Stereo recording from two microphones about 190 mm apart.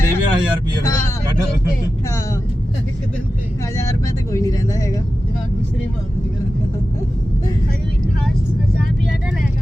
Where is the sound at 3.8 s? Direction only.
15° left (ahead or behind).